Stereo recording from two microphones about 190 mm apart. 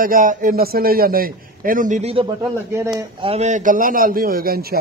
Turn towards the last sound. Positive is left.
turn(degrees=-50)  # may be behind; listen again after turning